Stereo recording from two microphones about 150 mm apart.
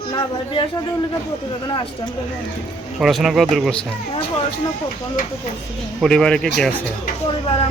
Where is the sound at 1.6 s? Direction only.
30° left (ahead or behind).